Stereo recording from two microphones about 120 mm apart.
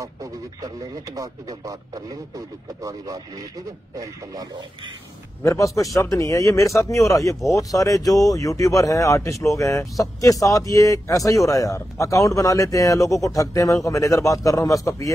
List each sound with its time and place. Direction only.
0.0 s speech: 30° right (ahead or behind)
5.4 s speech: 25° left (ahead or behind)